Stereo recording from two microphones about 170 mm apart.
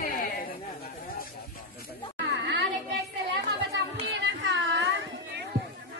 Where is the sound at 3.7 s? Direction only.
90° right.